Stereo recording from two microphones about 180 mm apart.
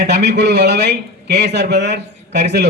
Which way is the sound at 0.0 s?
65° right (ahead or behind).